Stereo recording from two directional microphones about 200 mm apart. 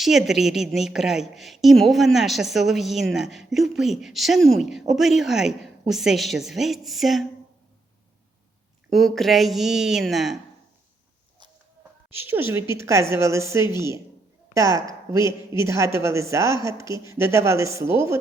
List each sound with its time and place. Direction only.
0.0 s a woman's voice: centre (ahead or behind)
8.9 s a woman's voice: centre (ahead or behind)
12.1 s a woman's voice: 10° right (ahead or behind)